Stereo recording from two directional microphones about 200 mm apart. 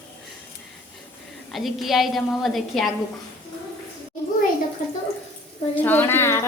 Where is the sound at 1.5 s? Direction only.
Centre (ahead or behind).